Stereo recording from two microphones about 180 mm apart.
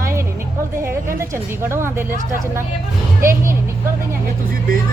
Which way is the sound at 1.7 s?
15° right (ahead or behind).